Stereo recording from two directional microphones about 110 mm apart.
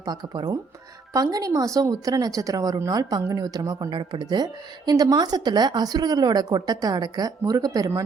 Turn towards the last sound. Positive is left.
turn(degrees=-30)  # may be behind; listen again after turning